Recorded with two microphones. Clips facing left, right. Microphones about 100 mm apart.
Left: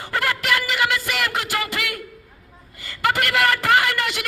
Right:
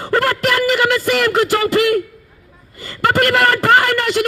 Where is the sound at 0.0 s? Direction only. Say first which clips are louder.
Right 8 dB; 45° right (ahead or behind).